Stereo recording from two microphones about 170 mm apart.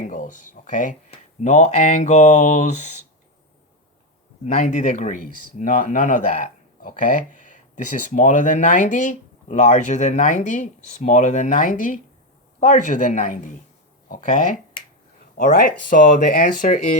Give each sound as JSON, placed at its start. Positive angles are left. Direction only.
{"t": 0.0, "sound": "a sound", "side_deg": 50}
{"t": 1.5, "sound": "speech", "side_deg": 45}
{"t": 4.4, "sound": "speech", "side_deg": 45}